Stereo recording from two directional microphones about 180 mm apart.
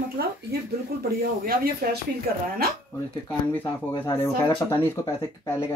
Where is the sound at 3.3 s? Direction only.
10° left (ahead or behind).